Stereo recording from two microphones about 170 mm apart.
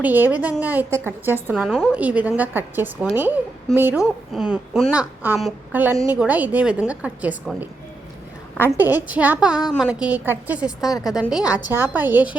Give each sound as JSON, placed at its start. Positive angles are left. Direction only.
{"t": 0.0, "sound": "a woman's voice", "side_deg": -10}